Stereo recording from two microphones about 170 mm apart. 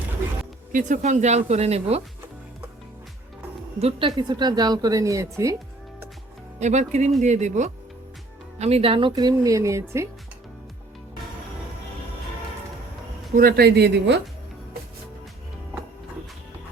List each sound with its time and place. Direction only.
0.7 s speech: 45° right (ahead or behind)
3.8 s speech: 35° right (ahead or behind); by 5.5 s 20° right (ahead or behind)
6.6 s speech: 40° right (ahead or behind); by 10.1 s 15° right (ahead or behind)
13.3 s speech: 65° right (ahead or behind); by 14.2 s 80° right